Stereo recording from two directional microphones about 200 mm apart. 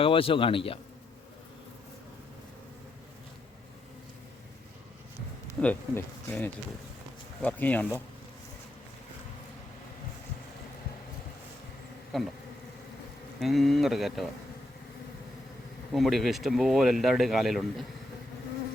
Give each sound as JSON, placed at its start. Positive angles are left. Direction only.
{"t": 0.0, "sound": "speech", "side_deg": 25}
{"t": 5.5, "sound": "speech", "side_deg": 10}
{"t": 12.1, "sound": "speech", "side_deg": 0}
{"t": 13.4, "sound": "speech", "side_deg": 0}
{"t": 15.9, "sound": "speech", "side_deg": 0}